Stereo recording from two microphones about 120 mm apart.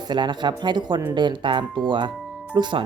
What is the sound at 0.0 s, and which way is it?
Speech, 40° right (ahead or behind).